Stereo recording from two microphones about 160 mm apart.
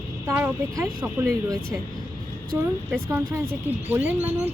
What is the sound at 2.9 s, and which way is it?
Speech, 15° right (ahead or behind).